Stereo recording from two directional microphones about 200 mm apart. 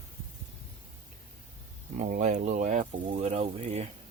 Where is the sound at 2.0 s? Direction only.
35° right (ahead or behind).